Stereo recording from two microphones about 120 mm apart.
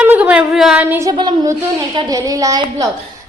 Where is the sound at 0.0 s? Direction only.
10° right (ahead or behind).